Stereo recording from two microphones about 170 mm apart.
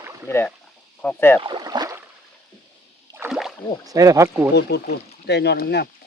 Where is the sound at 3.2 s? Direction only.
15° right (ahead or behind).